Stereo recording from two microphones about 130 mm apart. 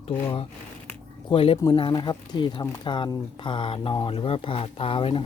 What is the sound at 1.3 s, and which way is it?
Speech, 40° left (ahead or behind).